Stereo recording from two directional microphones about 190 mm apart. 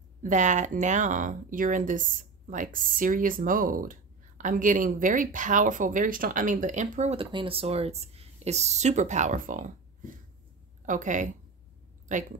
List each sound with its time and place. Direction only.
0.2 s speech: 40° right (ahead or behind)
10.9 s speech: 40° right (ahead or behind)